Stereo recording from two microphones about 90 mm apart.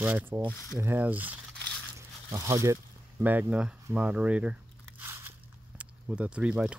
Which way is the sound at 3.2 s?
20° right (ahead or behind).